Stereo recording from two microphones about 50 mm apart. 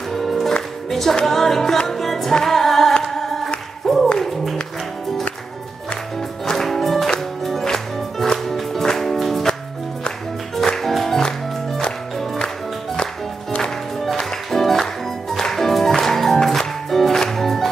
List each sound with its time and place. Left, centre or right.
0.1 s music: centre
6.4 s music: centre
10.8 s music: centre
12.9 s music: centre
13.9 s music: centre